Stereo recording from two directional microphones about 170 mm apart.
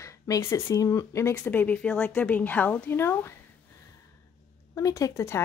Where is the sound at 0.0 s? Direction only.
20° left (ahead or behind).